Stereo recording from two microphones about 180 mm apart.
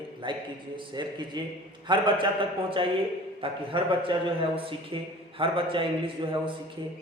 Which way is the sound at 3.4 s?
30° right (ahead or behind).